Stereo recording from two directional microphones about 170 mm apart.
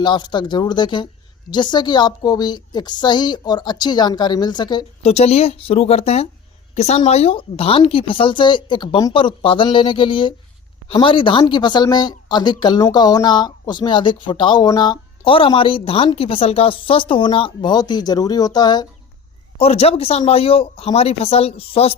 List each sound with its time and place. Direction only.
0.0 s speech: 25° left (ahead or behind)
5.0 s speech: 35° left (ahead or behind)
19.5 s speech: 35° left (ahead or behind)